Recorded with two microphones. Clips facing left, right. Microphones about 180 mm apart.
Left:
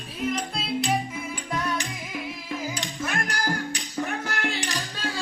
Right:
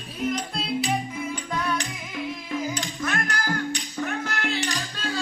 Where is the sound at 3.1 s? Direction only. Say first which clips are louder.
Right 1 dB; 10° left (ahead or behind).